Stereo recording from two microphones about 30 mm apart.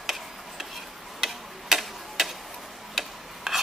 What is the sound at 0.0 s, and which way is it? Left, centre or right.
Tick-tock, centre.